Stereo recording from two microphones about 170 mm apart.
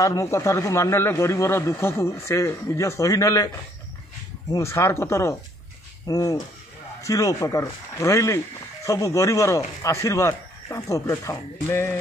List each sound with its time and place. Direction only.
0.0 s speech: 20° left (ahead or behind)
4.5 s speech: 15° left (ahead or behind)